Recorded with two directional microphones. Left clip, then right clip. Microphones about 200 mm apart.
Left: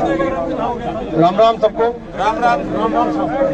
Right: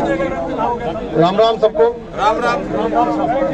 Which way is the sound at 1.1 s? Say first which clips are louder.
Left 1 dB; 30° right (ahead or behind).